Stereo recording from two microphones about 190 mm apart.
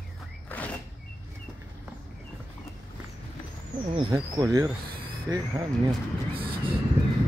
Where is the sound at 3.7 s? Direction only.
20° right (ahead or behind).